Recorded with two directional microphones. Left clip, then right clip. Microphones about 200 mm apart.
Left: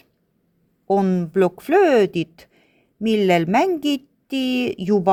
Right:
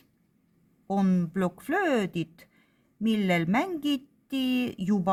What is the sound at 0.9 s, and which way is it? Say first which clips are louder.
Speech: left 10 dB; 25° left (ahead or behind).